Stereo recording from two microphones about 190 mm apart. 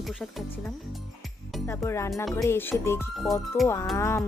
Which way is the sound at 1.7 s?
15° left (ahead or behind).